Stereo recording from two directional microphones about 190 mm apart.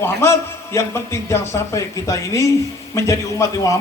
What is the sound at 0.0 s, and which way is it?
A man's voice, 15° left (ahead or behind).